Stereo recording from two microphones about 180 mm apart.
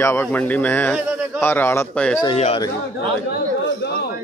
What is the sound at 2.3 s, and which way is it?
Speech, 35° left (ahead or behind).